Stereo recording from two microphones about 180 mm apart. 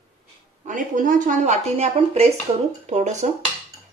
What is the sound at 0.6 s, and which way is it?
Speech, 45° right (ahead or behind).